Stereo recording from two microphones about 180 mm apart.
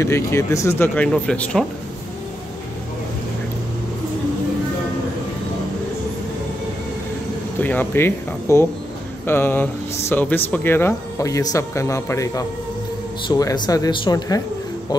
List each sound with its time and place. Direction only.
0.0 s speech: 15° left (ahead or behind)
7.6 s speech: 10° left (ahead or behind)